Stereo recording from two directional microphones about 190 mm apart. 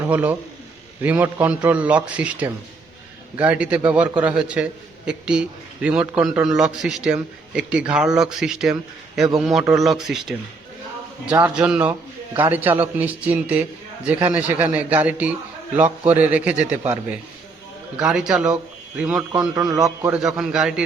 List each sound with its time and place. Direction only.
0.1 s a man's voice: 10° right (ahead or behind)
19.5 s a man's voice: 20° right (ahead or behind)
20.0 s a man's voice: 5° right (ahead or behind)